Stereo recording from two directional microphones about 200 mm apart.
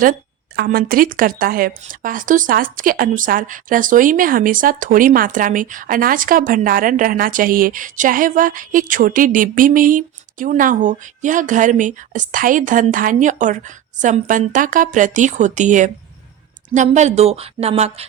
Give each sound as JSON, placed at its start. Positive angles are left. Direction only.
{"t": 0.0, "sound": "a woman's voice", "side_deg": -45}